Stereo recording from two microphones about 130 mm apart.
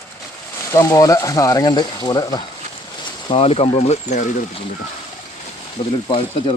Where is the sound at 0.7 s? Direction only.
25° left (ahead or behind).